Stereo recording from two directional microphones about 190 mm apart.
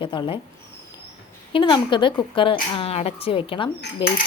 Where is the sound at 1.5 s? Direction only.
25° left (ahead or behind).